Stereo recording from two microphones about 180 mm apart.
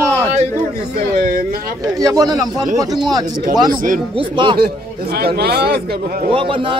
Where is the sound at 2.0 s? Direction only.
20° right (ahead or behind).